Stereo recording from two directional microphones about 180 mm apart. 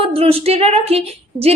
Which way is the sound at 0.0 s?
30° right (ahead or behind).